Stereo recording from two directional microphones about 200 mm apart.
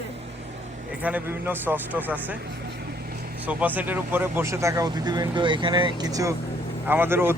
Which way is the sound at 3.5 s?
10° right (ahead or behind).